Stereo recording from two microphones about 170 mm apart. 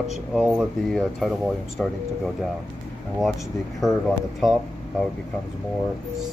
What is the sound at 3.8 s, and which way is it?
Speech, centre (ahead or behind).